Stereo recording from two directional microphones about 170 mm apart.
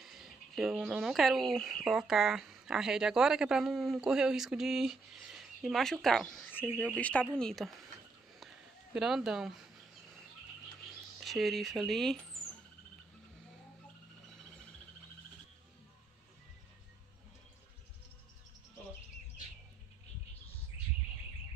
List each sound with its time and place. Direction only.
0.0 s speech: centre (ahead or behind)
8.4 s a sound: centre (ahead or behind)
11.1 s speech: centre (ahead or behind)